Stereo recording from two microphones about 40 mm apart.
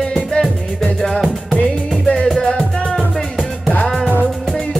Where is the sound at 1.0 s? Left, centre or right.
Centre.